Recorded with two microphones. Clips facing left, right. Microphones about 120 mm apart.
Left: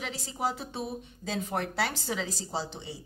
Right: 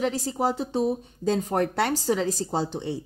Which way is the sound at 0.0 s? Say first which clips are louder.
Right 8 dB; 40° right (ahead or behind).